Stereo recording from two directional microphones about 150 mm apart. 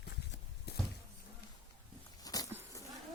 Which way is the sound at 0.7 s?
90° left.